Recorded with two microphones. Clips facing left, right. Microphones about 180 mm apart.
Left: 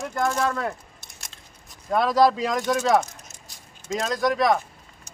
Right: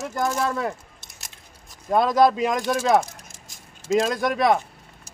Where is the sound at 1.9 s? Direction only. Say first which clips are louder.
Right 1 dB; 20° right (ahead or behind).